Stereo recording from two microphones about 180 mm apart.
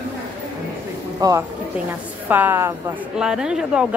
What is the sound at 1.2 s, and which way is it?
Speech, 20° right (ahead or behind).